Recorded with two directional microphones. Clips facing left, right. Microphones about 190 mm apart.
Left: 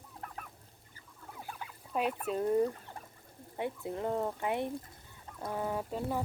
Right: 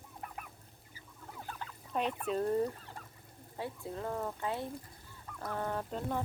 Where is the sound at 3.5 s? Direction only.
20° left (ahead or behind).